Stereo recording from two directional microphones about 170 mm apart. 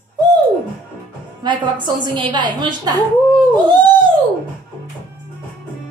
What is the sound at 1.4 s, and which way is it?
A woman's voice, 25° right (ahead or behind).